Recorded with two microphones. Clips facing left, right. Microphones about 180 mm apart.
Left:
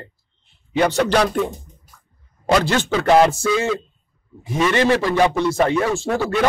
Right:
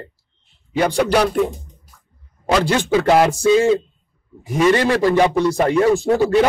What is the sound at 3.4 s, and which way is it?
Speech, 25° right (ahead or behind).